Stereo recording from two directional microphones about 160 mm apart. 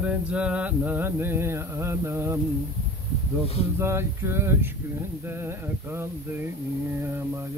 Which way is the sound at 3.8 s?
15° right (ahead or behind).